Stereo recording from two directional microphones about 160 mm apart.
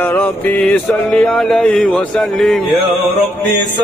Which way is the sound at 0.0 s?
10° left (ahead or behind).